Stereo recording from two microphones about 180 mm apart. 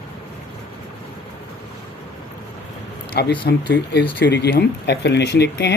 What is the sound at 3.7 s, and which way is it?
Speech, 75° left (ahead or behind).